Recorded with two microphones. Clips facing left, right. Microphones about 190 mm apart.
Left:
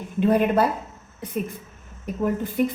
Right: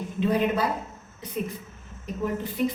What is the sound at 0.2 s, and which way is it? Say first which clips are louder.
Speech: left 5 dB; 50° left (ahead or behind).